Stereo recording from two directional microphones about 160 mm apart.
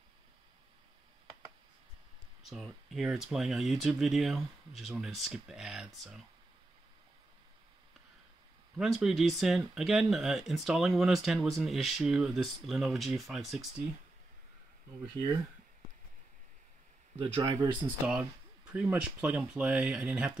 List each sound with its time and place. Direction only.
2.5 s speech: centre (ahead or behind)
8.7 s speech: centre (ahead or behind)
17.2 s speech: 25° right (ahead or behind)
18.7 s speech: 5° right (ahead or behind)